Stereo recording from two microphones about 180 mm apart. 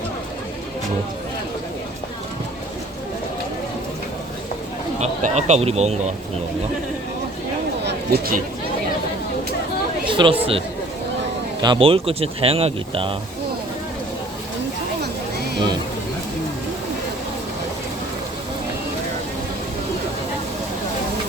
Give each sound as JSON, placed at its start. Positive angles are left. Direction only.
{"t": 4.9, "sound": "speech", "side_deg": -40}
{"t": 7.9, "sound": "a sound", "side_deg": -55}
{"t": 10.1, "sound": "chatter", "side_deg": -30}
{"t": 11.6, "sound": "speech", "side_deg": -30}